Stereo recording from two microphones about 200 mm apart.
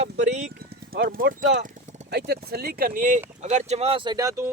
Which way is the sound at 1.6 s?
35° right (ahead or behind).